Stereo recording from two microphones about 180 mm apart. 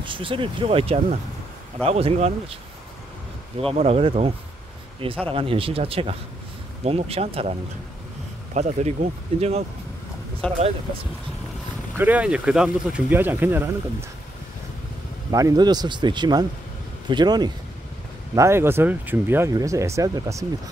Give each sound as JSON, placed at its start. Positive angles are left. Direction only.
{"t": 0.0, "sound": "speech", "side_deg": -30}
{"t": 3.5, "sound": "speech", "side_deg": -35}
{"t": 5.3, "sound": "speech", "side_deg": -30}
{"t": 8.5, "sound": "speech", "side_deg": -40}
{"t": 10.4, "sound": "speech", "side_deg": 5}
{"t": 12.0, "sound": "speech", "side_deg": -10}
{"t": 15.3, "sound": "speech", "side_deg": -20}